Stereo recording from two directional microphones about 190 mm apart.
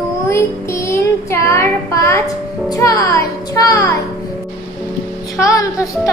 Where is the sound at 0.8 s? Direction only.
10° left (ahead or behind).